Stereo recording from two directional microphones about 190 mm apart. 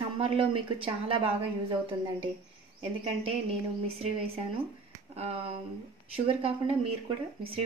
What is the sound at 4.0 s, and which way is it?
Speech, 30° right (ahead or behind).